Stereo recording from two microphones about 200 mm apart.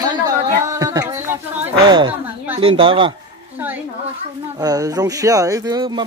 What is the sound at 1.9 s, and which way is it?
Speech, 25° right (ahead or behind).